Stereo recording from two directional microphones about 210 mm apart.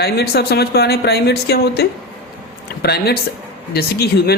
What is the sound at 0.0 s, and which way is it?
Speech, 50° left (ahead or behind).